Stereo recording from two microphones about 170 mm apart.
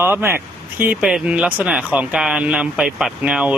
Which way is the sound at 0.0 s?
15° right (ahead or behind).